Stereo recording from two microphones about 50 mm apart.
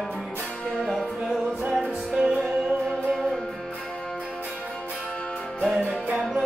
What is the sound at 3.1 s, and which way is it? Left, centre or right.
Music, centre.